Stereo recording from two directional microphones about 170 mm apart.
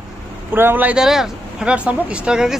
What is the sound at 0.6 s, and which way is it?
Speech, 10° right (ahead or behind).